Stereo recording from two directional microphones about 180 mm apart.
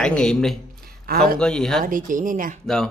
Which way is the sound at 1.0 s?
55° right (ahead or behind).